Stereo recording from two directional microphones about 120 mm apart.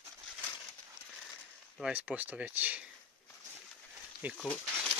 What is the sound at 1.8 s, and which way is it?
Speech, 10° right (ahead or behind).